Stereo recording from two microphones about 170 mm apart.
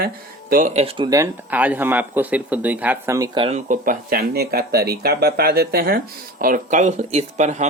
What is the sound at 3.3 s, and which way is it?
Speech, 35° right (ahead or behind).